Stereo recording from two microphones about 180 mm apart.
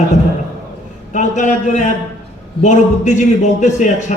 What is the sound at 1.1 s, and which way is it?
A man's voice, 40° left (ahead or behind).